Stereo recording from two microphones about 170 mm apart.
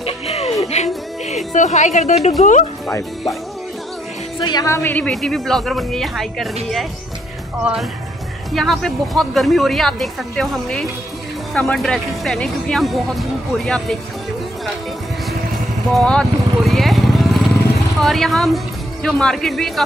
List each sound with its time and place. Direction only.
0.0 s music: 40° left (ahead or behind)
2.4 s speech: 45° left (ahead or behind)
4.4 s speech: 25° left (ahead or behind); by 6.9 s centre (ahead or behind)
8.5 s speech: centre (ahead or behind)
15.9 s vehicle: 5° left (ahead or behind)
18.0 s speech: centre (ahead or behind)